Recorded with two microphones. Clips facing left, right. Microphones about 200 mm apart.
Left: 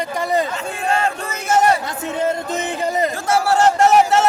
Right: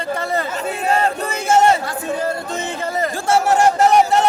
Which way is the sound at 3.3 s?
20° right (ahead or behind).